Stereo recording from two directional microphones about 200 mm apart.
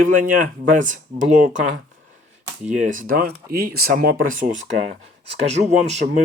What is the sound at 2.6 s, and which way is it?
Speech, 40° right (ahead or behind).